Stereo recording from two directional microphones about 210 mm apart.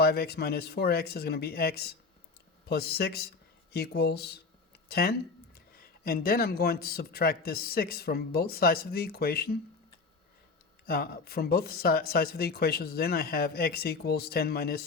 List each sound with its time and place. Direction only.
0.0 s speech: 50° left (ahead or behind)
10.8 s speech: 45° left (ahead or behind)